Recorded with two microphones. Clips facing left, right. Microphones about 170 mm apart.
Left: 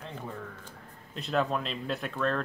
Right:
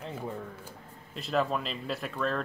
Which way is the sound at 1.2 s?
Centre (ahead or behind).